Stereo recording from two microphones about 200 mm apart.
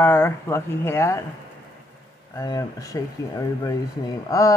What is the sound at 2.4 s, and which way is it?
Speech, 15° left (ahead or behind).